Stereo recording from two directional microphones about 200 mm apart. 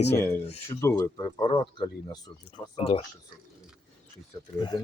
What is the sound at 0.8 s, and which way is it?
Speech, 15° left (ahead or behind).